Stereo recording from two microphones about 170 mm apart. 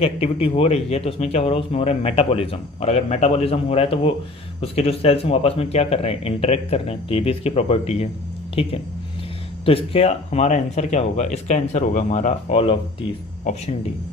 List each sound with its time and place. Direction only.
0.0 s speech: 35° left (ahead or behind)
9.7 s speech: 35° left (ahead or behind)